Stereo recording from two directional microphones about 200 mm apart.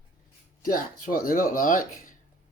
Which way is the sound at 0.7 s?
45° left (ahead or behind).